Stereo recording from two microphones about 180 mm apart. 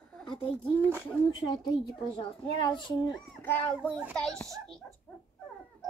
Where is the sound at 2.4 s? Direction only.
25° left (ahead or behind).